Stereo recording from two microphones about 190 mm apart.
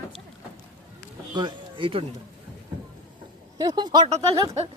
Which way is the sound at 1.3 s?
25° right (ahead or behind).